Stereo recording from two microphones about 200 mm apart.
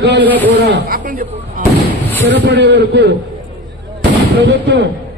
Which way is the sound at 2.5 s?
60° right (ahead or behind).